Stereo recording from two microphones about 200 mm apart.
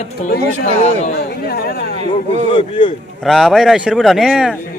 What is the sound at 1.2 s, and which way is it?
Speech, 50° left (ahead or behind).